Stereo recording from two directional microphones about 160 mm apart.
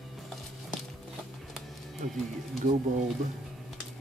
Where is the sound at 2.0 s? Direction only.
50° right (ahead or behind).